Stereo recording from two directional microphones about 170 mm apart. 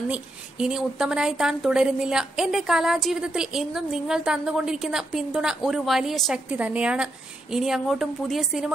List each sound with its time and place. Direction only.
0.1 s a woman's voice: 5° right (ahead or behind)